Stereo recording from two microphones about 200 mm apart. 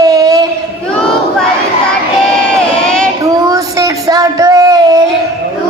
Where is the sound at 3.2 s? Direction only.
15° right (ahead or behind).